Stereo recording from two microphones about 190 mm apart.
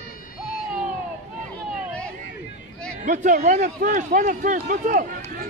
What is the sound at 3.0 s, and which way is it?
Speech, 45° right (ahead or behind).